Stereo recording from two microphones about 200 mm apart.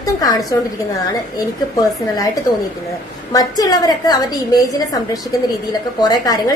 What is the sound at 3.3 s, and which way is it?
A woman's voice, 20° left (ahead or behind).